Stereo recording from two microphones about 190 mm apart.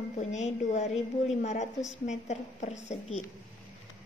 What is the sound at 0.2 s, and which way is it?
A woman's voice, 40° left (ahead or behind).